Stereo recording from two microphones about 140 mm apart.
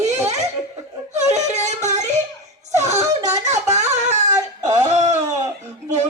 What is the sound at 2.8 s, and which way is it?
Wail, 55° right (ahead or behind).